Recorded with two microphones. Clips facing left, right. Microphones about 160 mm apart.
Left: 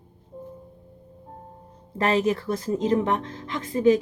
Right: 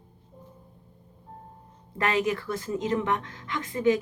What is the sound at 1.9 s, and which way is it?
Speech, 30° left (ahead or behind).